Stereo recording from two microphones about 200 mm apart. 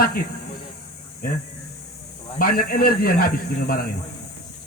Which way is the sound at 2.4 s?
45° left (ahead or behind).